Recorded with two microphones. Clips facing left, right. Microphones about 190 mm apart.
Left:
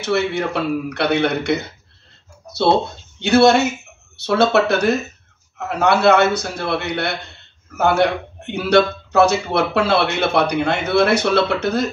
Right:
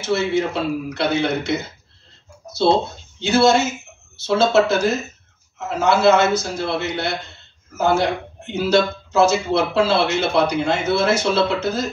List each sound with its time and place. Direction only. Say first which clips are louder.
0.0 s speech: even; 65° left (ahead or behind)
3.2 s speech: left 3 dB; 65° left (ahead or behind)